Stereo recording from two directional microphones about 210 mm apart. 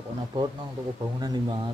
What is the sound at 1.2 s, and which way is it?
Speech, 20° right (ahead or behind).